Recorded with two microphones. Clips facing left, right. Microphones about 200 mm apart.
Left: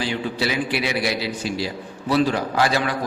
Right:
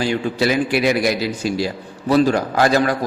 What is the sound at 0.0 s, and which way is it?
A man's voice, 45° right (ahead or behind).